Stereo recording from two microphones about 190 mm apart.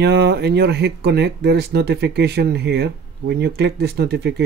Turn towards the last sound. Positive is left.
turn(degrees=-60)  # may be behind; listen again after turning